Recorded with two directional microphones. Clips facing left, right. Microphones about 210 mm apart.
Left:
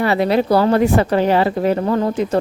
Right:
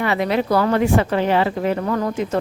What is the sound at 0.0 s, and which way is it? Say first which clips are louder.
A woman's voice: left 4 dB; 35° left (ahead or behind).